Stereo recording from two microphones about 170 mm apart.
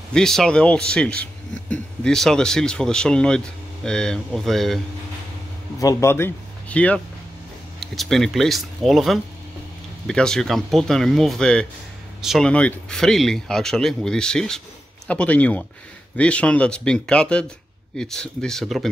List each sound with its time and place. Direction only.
0.1 s a man's voice: 5° left (ahead or behind)
5.8 s a man's voice: 20° left (ahead or behind); by 18.9 s centre (ahead or behind)